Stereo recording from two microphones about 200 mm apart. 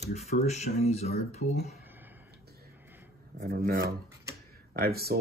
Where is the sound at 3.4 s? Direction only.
45° right (ahead or behind).